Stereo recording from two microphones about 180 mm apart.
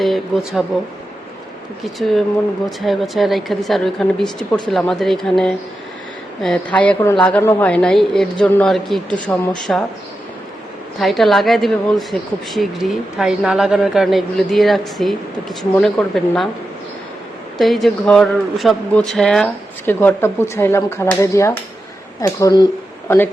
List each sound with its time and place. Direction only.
0.0 s a man's voice: centre (ahead or behind)
2.0 s a man's voice: centre (ahead or behind)
11.0 s a man's voice: centre (ahead or behind)
17.6 s speech: centre (ahead or behind); by 23.1 s 20° left (ahead or behind)